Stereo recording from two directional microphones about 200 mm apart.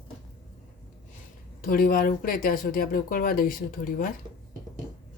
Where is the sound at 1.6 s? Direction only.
45° left (ahead or behind).